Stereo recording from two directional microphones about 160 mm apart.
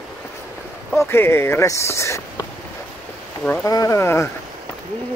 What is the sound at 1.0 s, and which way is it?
Speech, 15° left (ahead or behind).